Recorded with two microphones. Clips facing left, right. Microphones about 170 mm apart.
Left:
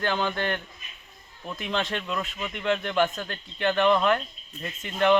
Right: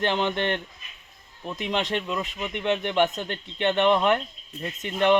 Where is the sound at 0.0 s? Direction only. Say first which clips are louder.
Right 2 dB; 20° right (ahead or behind).